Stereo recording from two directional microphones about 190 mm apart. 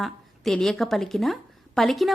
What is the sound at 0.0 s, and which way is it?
Speech, centre (ahead or behind).